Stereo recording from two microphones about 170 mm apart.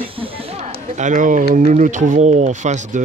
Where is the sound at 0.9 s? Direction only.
50° right (ahead or behind).